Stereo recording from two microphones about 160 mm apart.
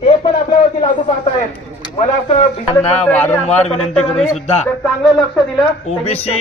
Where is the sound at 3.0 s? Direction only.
10° left (ahead or behind).